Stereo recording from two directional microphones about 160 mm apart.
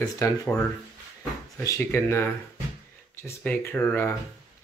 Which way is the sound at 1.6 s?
15° left (ahead or behind).